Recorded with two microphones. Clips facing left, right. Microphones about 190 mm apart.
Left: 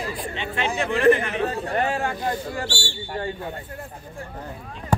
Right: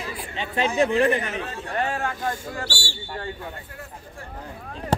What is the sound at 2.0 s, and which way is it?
Speech, 25° left (ahead or behind).